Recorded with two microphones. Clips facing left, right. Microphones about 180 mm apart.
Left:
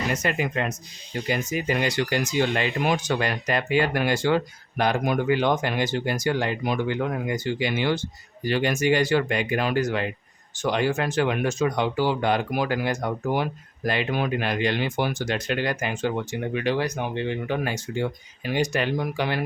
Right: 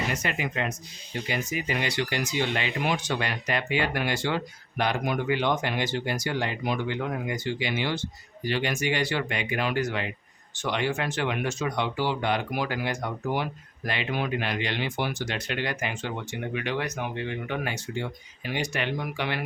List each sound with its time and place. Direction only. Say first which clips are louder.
0.1 s speech: left 5 dB; 45° left (ahead or behind)